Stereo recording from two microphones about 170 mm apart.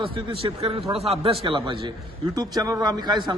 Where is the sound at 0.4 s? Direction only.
35° right (ahead or behind).